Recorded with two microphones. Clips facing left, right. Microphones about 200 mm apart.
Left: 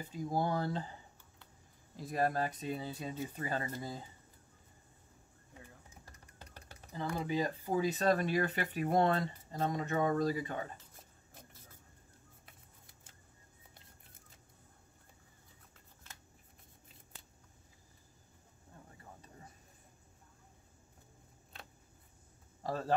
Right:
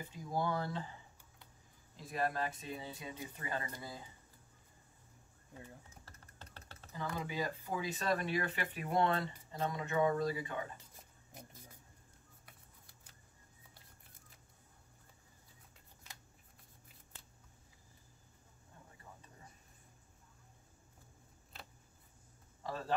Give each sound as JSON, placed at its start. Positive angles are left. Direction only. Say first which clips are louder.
{"t": 0.3, "sound": "speech", "louder": "left 2 dB", "side_deg": 35}
{"t": 2.0, "sound": "speech", "louder": "left 4 dB", "side_deg": 40}
{"t": 6.0, "sound": "vehicle", "louder": "left 1 dB", "side_deg": 15}
{"t": 6.9, "sound": "speech", "louder": "left 5 dB", "side_deg": 35}
{"t": 22.6, "sound": "a sound", "louder": "left 4 dB", "side_deg": 40}